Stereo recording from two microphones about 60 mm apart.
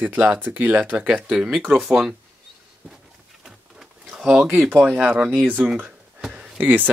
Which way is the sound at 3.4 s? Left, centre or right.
Centre.